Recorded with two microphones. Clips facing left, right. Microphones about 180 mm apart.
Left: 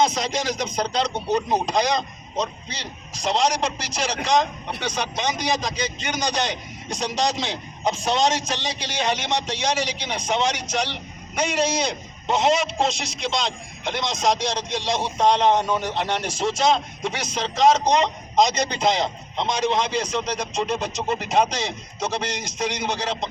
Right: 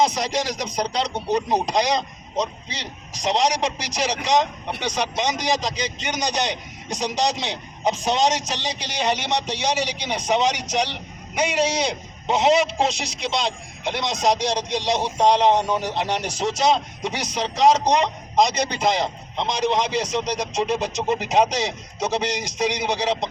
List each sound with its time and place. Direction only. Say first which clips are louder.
0.0 s a man's voice: right 1 dB; 15° right (ahead or behind)
14.5 s a man's voice: right 3 dB; 15° right (ahead or behind)